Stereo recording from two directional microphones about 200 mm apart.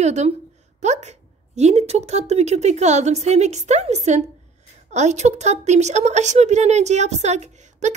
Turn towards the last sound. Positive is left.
turn(degrees=-35)  # may be behind; listen again after turning